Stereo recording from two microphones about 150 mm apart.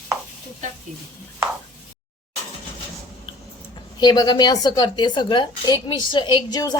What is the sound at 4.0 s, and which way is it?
A woman's voice, 25° left (ahead or behind).